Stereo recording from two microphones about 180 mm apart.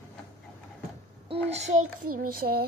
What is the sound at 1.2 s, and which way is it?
Child singing, 35° right (ahead or behind).